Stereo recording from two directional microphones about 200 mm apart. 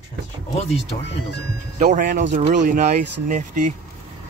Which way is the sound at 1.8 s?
45° right (ahead or behind).